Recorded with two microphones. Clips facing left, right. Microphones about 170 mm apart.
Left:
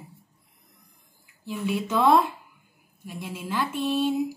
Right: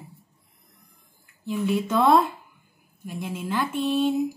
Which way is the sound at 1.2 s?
5° left (ahead or behind).